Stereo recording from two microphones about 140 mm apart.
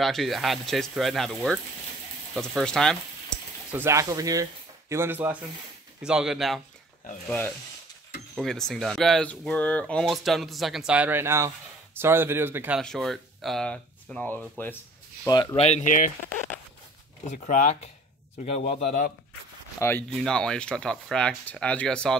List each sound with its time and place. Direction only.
0.0 s speech: centre (ahead or behind)
3.7 s speech: 20° right (ahead or behind); by 6.6 s centre (ahead or behind)
7.2 s rub: 10° left (ahead or behind)
8.4 s speech: 5° left (ahead or behind); by 12.8 s 10° right (ahead or behind)
12.8 s speech: centre (ahead or behind)
15.2 s speech: 30° left (ahead or behind)
15.5 s speech: 50° left (ahead or behind); by 16.1 s 65° left (ahead or behind)
17.3 s speech: 60° left (ahead or behind)
18.4 s a man's voice: 45° left (ahead or behind)
19.8 s rub: 15° left (ahead or behind)
20.2 s speech: 5° left (ahead or behind)